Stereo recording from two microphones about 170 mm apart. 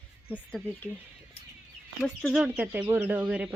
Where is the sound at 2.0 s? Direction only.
Centre (ahead or behind).